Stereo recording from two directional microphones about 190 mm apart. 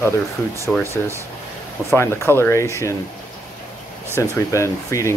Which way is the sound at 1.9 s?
15° left (ahead or behind).